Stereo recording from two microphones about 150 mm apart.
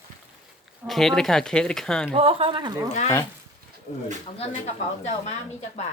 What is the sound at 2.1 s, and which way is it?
Speech, 40° right (ahead or behind).